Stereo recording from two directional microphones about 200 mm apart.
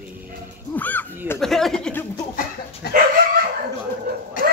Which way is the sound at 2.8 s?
50° left (ahead or behind).